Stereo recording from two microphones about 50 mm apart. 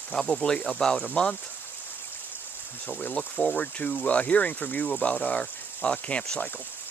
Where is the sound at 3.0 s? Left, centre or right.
Left.